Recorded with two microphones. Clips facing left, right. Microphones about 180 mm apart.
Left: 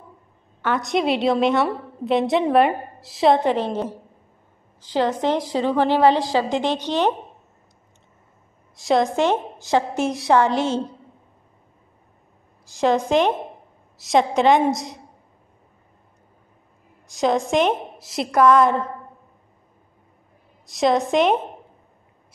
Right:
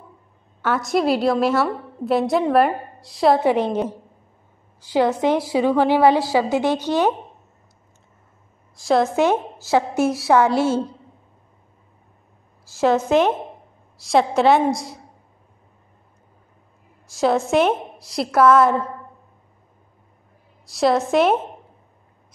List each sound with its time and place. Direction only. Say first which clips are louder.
0.6 s a woman's voice: right 1 dB; 5° right (ahead or behind)
8.8 s a woman's voice: right 1 dB; 5° right (ahead or behind)
12.7 s a woman's voice: right 1 dB; 5° right (ahead or behind)
14.0 s a woman's voice: right 1 dB; 5° right (ahead or behind)
14.7 s a woman's voice: even; 20° left (ahead or behind)
17.1 s a woman's voice: right 2 dB; centre (ahead or behind)
20.7 s a woman's voice: right 1 dB; centre (ahead or behind)